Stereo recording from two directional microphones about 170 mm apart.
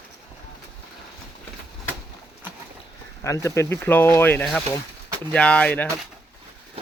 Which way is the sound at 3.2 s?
15° left (ahead or behind).